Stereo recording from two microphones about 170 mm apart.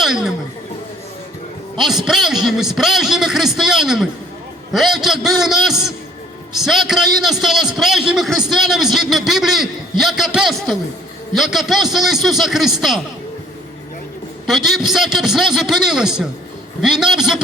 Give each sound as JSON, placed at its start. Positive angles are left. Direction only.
{"t": 0.0, "sound": "speech", "side_deg": 0}
{"t": 1.8, "sound": "a man's voice", "side_deg": 0}
{"t": 14.4, "sound": "a man's voice", "side_deg": 0}